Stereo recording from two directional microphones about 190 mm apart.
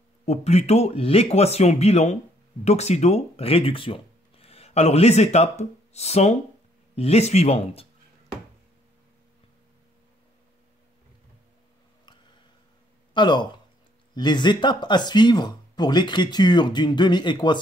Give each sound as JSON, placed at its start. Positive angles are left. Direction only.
{"t": 0.2, "sound": "speech", "side_deg": 35}
{"t": 13.1, "sound": "a man's voice", "side_deg": 25}